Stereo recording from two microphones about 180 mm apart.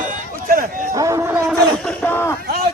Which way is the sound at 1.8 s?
5° left (ahead or behind).